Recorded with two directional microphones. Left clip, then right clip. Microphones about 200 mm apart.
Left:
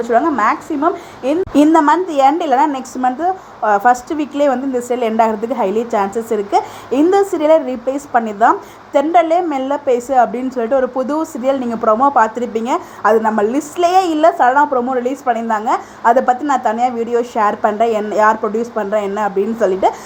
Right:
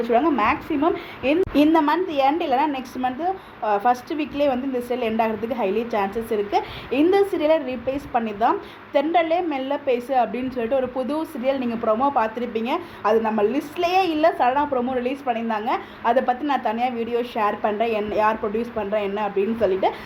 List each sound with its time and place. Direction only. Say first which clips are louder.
0.0 s a woman's voice: left 6 dB; 20° left (ahead or behind)
1.5 s a woman's voice: left 10 dB; 35° left (ahead or behind)